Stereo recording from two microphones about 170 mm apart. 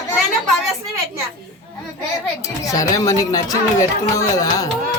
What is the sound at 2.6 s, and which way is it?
Speech, 20° left (ahead or behind).